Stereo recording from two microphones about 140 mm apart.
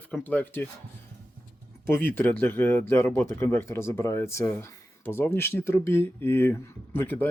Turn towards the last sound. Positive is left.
turn(degrees=15)  # may be behind; listen again after turning